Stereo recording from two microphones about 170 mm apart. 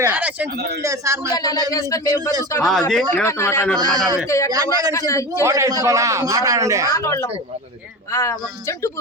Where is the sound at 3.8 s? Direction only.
25° right (ahead or behind).